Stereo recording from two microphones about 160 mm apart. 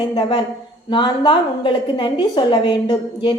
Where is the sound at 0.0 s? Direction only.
30° left (ahead or behind).